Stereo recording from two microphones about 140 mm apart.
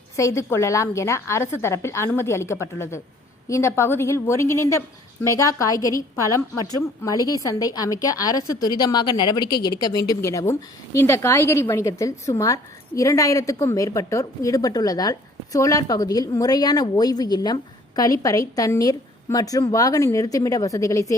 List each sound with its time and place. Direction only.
0.2 s a woman's voice: 20° left (ahead or behind)